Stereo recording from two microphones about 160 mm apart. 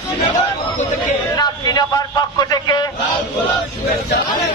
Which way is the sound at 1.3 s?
25° left (ahead or behind).